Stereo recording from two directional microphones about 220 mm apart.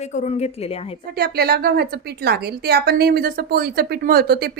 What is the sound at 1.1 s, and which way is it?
A woman's voice, 45° right (ahead or behind).